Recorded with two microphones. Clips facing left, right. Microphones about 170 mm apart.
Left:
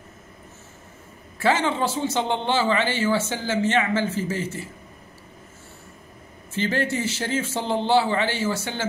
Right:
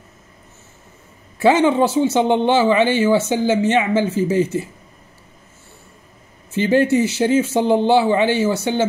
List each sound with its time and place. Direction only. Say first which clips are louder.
1.4 s speech: right 8 dB; 15° right (ahead or behind)
6.5 s speech: right 9 dB; 15° right (ahead or behind)